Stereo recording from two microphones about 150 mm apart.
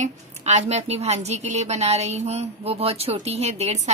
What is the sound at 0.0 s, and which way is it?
A woman's voice, 50° right (ahead or behind).